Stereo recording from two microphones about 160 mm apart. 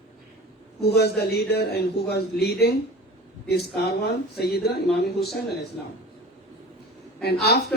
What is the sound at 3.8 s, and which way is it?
A man's voice, 90° left.